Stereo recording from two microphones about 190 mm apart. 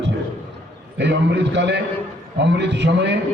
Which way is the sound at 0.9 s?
65° right (ahead or behind).